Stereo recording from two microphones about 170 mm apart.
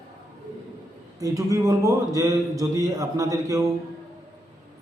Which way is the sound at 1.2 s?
20° right (ahead or behind).